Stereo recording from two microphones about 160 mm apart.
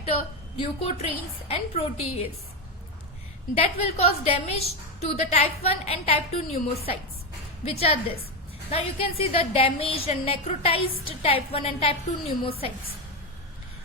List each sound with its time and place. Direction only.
0.1 s a woman's voice: 35° left (ahead or behind)
3.6 s a woman's voice: 40° left (ahead or behind)